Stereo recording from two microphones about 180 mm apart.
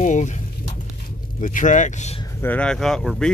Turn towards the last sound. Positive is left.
turn(degrees=5)  # may be behind; listen again after turning